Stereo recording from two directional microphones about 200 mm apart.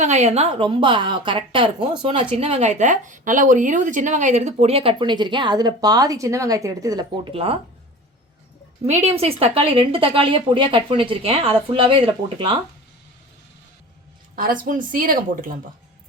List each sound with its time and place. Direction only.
0.0 s speech: 35° right (ahead or behind)
8.9 s speech: 30° right (ahead or behind)
14.3 s speech: 45° right (ahead or behind)